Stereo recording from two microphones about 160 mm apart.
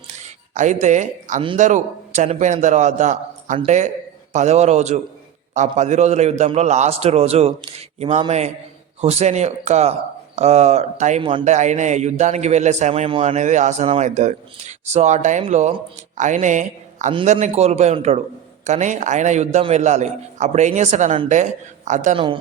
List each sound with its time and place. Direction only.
0.5 s a man's voice: 50° right (ahead or behind)
22.1 s speech: 30° right (ahead or behind)